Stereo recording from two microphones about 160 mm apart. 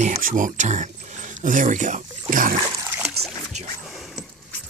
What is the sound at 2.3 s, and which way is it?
Splash, 55° right (ahead or behind).